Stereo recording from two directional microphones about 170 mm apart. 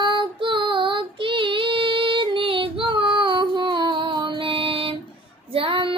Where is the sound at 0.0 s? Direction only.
30° right (ahead or behind).